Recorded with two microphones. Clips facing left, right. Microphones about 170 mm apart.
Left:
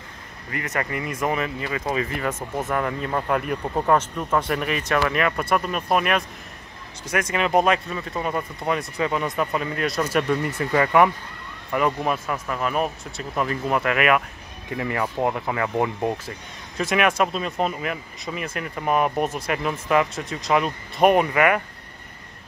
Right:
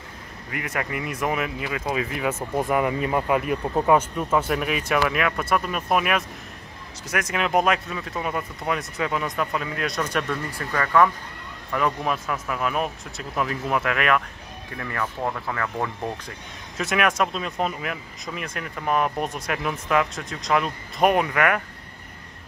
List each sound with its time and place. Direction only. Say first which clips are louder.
0.5 s speech: left 1 dB; 5° right (ahead or behind)
10.3 s speech: left 6 dB; 20° left (ahead or behind)
11.7 s speech: left 2 dB; 5° left (ahead or behind)
14.8 s speech: left 4 dB; 20° left (ahead or behind)
16.3 s speech: left 2 dB; centre (ahead or behind)